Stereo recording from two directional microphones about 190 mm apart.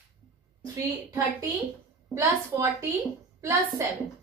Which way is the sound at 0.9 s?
15° right (ahead or behind).